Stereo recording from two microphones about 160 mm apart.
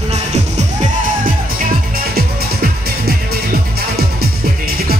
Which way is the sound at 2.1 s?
75° right (ahead or behind).